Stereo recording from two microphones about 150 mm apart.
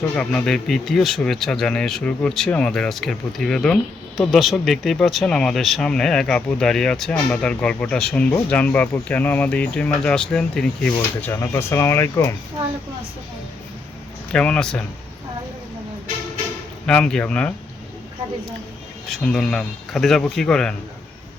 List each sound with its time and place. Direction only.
0.2 s speech: 5° left (ahead or behind)
11.2 s speech: 15° left (ahead or behind)
14.3 s speech: 5° left (ahead or behind)
16.8 s speech: 5° left (ahead or behind)
19.0 s speech: 5° left (ahead or behind)